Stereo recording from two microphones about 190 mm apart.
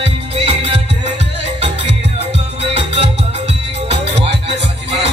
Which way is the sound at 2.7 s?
30° right (ahead or behind).